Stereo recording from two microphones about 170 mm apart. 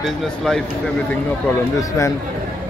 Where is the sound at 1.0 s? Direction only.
15° left (ahead or behind).